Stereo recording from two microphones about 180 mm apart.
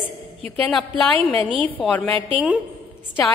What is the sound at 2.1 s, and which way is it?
Speech, 30° right (ahead or behind).